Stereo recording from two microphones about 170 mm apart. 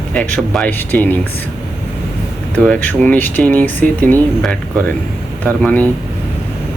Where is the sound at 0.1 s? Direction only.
5° left (ahead or behind).